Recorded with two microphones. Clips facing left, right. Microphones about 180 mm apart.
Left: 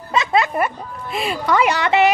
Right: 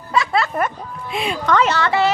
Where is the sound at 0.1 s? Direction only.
20° left (ahead or behind).